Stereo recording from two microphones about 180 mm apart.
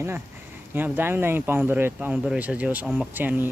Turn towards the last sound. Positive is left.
turn(degrees=-10)  # may be behind; listen again after turning